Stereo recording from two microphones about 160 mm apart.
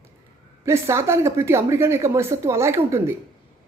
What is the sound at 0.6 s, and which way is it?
Speech, 15° right (ahead or behind).